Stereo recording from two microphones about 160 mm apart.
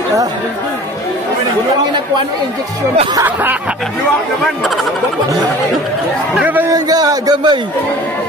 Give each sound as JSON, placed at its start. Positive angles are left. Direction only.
{"t": 3.2, "sound": "a man's voice", "side_deg": -10}
{"t": 6.3, "sound": "a man's voice", "side_deg": -10}
{"t": 6.7, "sound": "a sound", "side_deg": -25}